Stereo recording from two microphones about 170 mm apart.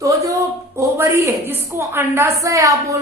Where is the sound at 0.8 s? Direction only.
15° right (ahead or behind).